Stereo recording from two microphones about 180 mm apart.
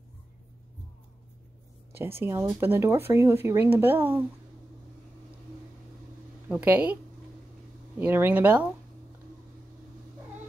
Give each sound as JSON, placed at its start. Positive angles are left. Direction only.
{"t": 2.0, "sound": "speech", "side_deg": -10}
{"t": 6.5, "sound": "speech", "side_deg": -10}
{"t": 8.0, "sound": "speech", "side_deg": -10}